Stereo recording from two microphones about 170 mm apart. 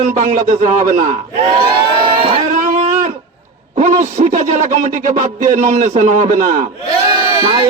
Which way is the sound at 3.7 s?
45° right (ahead or behind).